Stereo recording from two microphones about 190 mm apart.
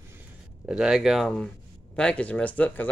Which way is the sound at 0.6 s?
5° right (ahead or behind).